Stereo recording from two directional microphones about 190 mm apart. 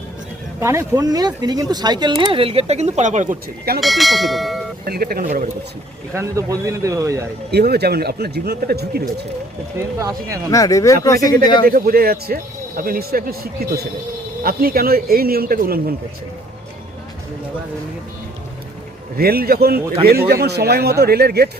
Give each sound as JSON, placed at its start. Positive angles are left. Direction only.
{"t": 0.6, "sound": "speech", "side_deg": -15}
{"t": 3.8, "sound": "speech", "side_deg": 0}
{"t": 4.9, "sound": "speech", "side_deg": -50}
{"t": 6.1, "sound": "speech", "side_deg": -15}
{"t": 7.5, "sound": "speech", "side_deg": -55}
{"t": 9.7, "sound": "speech", "side_deg": -15}
{"t": 10.5, "sound": "speech", "side_deg": 15}
{"t": 11.6, "sound": "speech", "side_deg": -50}
{"t": 19.1, "sound": "speech", "side_deg": -50}